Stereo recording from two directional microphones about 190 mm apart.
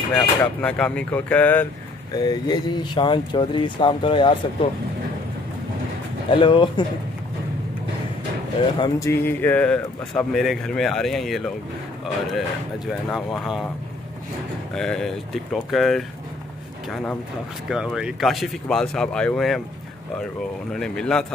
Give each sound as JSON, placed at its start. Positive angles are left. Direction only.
{"t": 0.1, "sound": "speech", "side_deg": 5}
{"t": 2.1, "sound": "speech", "side_deg": 20}
{"t": 6.3, "sound": "speech", "side_deg": 25}
{"t": 8.7, "sound": "speech", "side_deg": 25}
{"t": 9.1, "sound": "speech", "side_deg": 10}
{"t": 12.8, "sound": "speech", "side_deg": 0}
{"t": 14.7, "sound": "speech", "side_deg": 5}
{"t": 20.7, "sound": "speech", "side_deg": 5}